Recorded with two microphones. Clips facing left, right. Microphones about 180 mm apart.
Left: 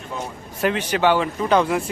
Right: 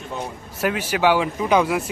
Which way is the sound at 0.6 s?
10° right (ahead or behind).